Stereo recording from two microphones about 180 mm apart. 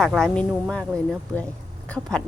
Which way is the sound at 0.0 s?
Centre (ahead or behind).